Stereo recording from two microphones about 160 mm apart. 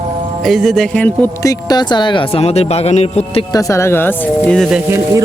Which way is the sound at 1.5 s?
25° left (ahead or behind).